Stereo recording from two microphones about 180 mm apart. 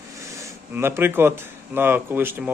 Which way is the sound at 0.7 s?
15° right (ahead or behind).